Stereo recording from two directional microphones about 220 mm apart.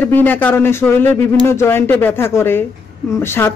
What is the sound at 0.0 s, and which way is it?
Speech, 10° left (ahead or behind).